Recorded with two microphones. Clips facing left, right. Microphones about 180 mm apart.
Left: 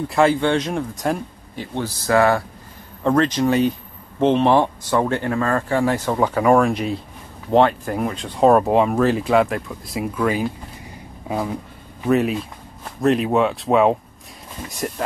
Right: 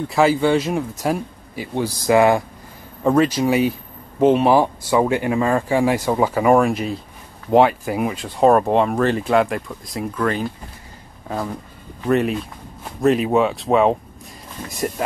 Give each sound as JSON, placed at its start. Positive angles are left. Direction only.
{"t": 0.1, "sound": "speech", "side_deg": -5}